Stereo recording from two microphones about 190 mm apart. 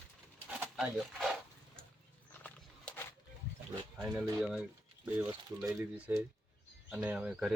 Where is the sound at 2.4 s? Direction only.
10° left (ahead or behind).